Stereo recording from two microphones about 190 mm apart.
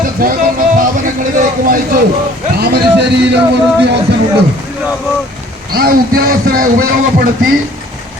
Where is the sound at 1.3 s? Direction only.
45° right (ahead or behind).